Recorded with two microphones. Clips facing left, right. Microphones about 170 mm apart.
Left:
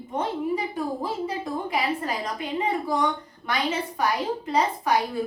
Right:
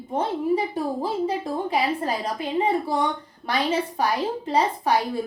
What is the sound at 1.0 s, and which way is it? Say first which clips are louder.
A woman's voice: right 4 dB; 30° right (ahead or behind).